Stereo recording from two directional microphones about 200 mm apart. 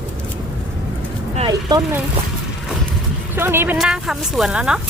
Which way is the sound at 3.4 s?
10° right (ahead or behind).